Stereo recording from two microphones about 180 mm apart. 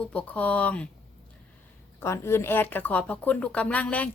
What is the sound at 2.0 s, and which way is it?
Speech, 15° left (ahead or behind).